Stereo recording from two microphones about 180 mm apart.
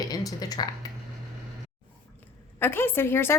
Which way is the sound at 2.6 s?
10° left (ahead or behind).